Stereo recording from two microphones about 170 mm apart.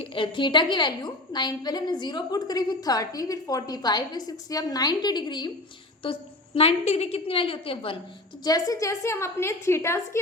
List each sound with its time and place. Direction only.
0.0 s a woman's voice: 30° left (ahead or behind)
8.4 s a woman's voice: 20° left (ahead or behind)